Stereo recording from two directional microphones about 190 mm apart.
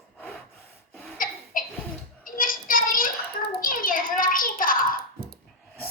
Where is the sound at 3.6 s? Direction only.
45° left (ahead or behind).